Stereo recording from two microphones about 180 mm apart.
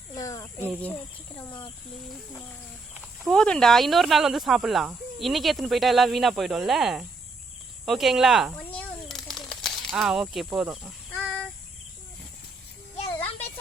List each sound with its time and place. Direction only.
0.1 s cricket: 20° left (ahead or behind)
1.5 s speech: 25° left (ahead or behind)
2.9 s speech: 5° right (ahead or behind)
7.9 s bird flight: centre (ahead or behind)
11.1 s a sound: 10° left (ahead or behind)
13.1 s a sound: 10° left (ahead or behind)